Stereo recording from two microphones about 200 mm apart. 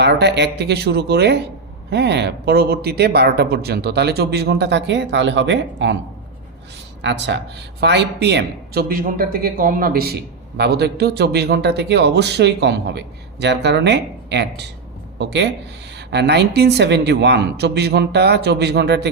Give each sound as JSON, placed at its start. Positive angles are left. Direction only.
{"t": 0.0, "sound": "speech", "side_deg": -60}
{"t": 7.0, "sound": "speech", "side_deg": -60}